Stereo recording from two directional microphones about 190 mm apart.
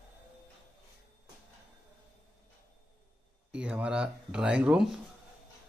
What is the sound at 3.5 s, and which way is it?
Speech, 5° right (ahead or behind).